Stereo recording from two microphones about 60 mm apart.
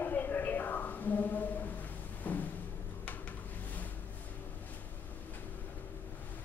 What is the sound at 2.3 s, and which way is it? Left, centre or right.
Music, left.